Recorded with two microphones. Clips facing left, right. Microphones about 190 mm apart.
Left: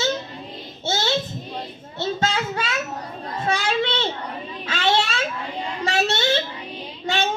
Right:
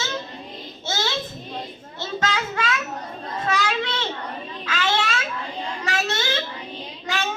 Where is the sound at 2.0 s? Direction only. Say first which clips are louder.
Left 3 dB; 30° left (ahead or behind).